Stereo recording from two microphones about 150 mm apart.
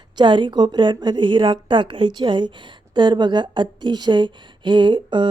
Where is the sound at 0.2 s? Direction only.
30° right (ahead or behind).